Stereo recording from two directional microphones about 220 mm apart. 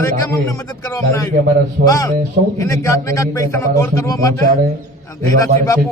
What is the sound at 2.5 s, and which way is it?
A man's voice, 15° left (ahead or behind).